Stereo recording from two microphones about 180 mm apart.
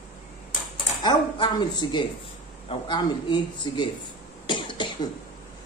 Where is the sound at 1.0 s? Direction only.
25° left (ahead or behind).